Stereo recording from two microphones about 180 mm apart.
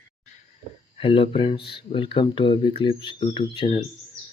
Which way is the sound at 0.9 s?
30° left (ahead or behind).